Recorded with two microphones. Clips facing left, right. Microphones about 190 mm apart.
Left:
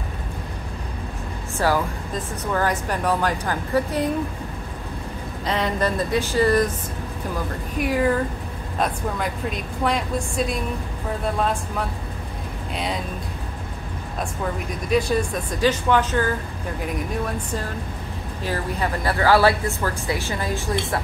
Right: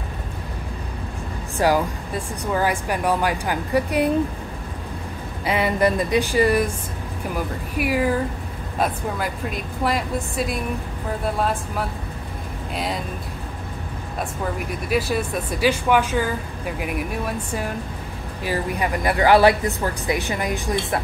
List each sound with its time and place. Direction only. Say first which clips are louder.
1.6 s speech: right 2 dB; 15° right (ahead or behind)
5.4 s speech: right 3 dB; 10° right (ahead or behind)
7.8 s a woman's voice: even; 5° right (ahead or behind)
12.7 s a woman's voice: right 1 dB; centre (ahead or behind)
14.4 s speech: right 1 dB; 5° right (ahead or behind)
18.4 s speech: right 2 dB; 10° right (ahead or behind)